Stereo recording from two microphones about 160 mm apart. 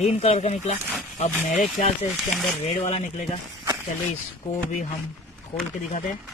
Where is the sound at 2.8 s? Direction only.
40° left (ahead or behind).